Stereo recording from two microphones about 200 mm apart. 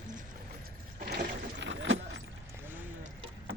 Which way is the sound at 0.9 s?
50° right (ahead or behind).